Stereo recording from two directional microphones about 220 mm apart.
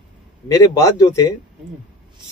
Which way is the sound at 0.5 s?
15° left (ahead or behind).